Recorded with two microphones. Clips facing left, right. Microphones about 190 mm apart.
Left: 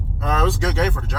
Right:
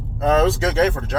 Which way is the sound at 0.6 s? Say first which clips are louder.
Right 4 dB; 40° right (ahead or behind).